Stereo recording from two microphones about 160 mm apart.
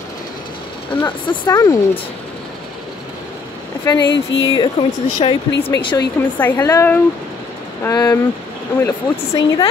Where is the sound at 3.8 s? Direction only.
30° left (ahead or behind).